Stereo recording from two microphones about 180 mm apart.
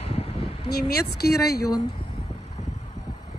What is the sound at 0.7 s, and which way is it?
Speech, 60° left (ahead or behind).